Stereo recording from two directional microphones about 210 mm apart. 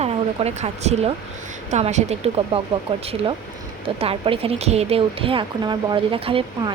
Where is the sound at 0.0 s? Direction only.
30° right (ahead or behind).